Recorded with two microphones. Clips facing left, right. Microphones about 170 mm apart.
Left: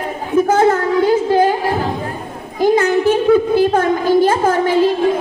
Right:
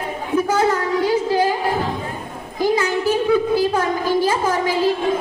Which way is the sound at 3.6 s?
55° left (ahead or behind).